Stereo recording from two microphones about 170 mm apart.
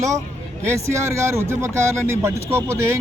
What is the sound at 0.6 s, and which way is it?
Speech, 15° right (ahead or behind).